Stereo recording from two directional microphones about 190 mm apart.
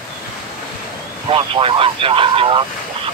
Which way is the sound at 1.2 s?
30° right (ahead or behind).